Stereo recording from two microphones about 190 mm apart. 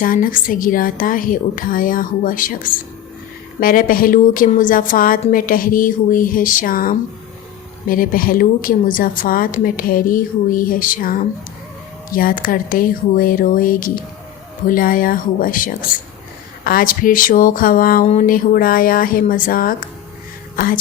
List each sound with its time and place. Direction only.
0.0 s a woman's voice: 45° left (ahead or behind)